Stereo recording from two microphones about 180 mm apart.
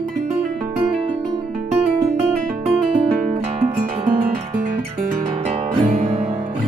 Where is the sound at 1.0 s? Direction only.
40° right (ahead or behind).